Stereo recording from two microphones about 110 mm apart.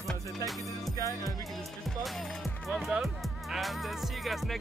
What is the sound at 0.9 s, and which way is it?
Music, 30° left (ahead or behind).